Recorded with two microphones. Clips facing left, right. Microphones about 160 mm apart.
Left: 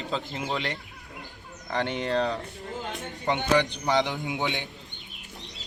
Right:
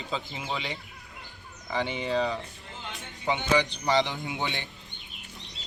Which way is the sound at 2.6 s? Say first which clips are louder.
Left 7 dB; 45° left (ahead or behind).